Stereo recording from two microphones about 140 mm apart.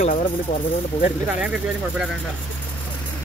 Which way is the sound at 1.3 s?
5° right (ahead or behind).